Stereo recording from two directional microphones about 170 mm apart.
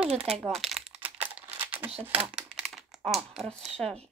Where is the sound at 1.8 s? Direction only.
30° right (ahead or behind).